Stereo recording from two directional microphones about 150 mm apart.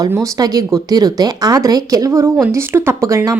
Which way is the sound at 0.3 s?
25° right (ahead or behind).